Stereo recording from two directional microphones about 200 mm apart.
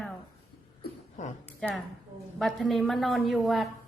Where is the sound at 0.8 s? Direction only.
40° left (ahead or behind).